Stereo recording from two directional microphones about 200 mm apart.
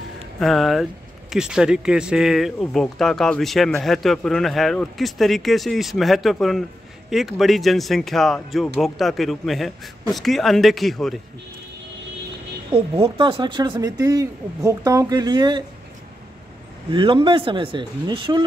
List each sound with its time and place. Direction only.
0.4 s speech: centre (ahead or behind)
12.7 s speech: 30° right (ahead or behind)
16.9 s speech: 25° right (ahead or behind)